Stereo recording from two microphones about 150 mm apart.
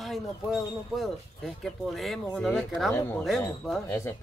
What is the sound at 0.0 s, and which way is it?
Speech, centre (ahead or behind).